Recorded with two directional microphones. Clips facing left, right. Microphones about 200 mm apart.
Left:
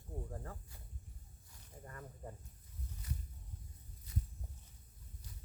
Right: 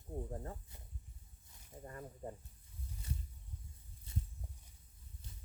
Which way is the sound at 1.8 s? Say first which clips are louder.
Right 4 dB; 20° right (ahead or behind).